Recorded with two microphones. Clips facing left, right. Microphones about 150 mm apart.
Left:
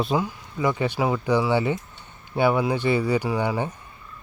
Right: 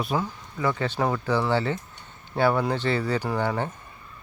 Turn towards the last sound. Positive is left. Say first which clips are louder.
# left 2 dB
turn(degrees=10)  # may be behind; listen again after turning